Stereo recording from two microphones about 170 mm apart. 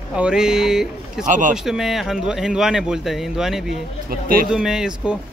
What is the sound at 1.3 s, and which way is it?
Speech, 50° right (ahead or behind).